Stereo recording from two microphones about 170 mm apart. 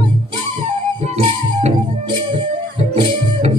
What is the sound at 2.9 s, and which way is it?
Music, 40° right (ahead or behind).